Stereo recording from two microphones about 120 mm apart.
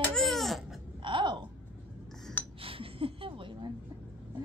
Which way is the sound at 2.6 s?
50° right (ahead or behind).